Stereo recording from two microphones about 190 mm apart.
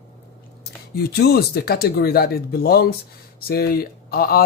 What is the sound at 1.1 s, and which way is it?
A man's voice, 55° left (ahead or behind).